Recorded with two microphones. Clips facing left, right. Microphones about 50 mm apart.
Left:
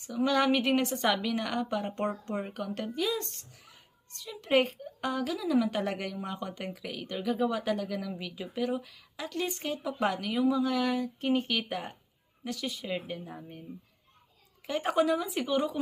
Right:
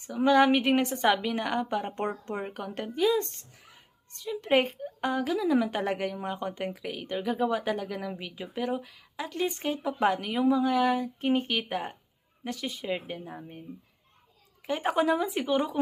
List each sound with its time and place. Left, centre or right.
0.1 s speech: right
2.4 s speech: centre
14.7 s speech: right